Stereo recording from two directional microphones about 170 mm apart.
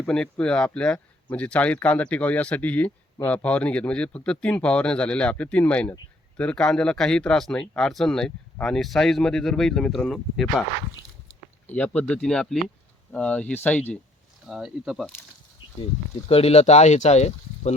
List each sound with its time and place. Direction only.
0.0 s speech: 5° left (ahead or behind)
11.7 s speech: 10° left (ahead or behind)
14.4 s speech: 5° right (ahead or behind)
15.6 s a sound: 25° left (ahead or behind)
16.3 s speech: 35° left (ahead or behind)